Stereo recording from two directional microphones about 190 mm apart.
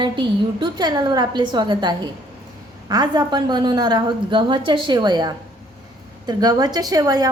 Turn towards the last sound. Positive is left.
turn(degrees=-20)  # may be behind; listen again after turning